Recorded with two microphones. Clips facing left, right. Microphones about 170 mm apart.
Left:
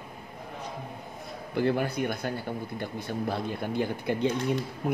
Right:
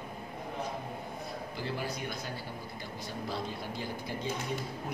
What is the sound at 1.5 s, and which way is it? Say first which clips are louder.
Speech: left 12 dB; 55° left (ahead or behind).